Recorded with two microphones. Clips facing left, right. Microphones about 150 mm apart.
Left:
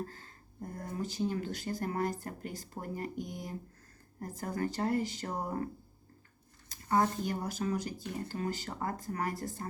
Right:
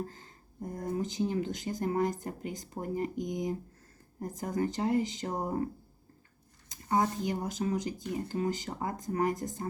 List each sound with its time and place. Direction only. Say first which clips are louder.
0.0 s speech: right 2 dB; 20° right (ahead or behind)
6.7 s speech: even; 15° right (ahead or behind)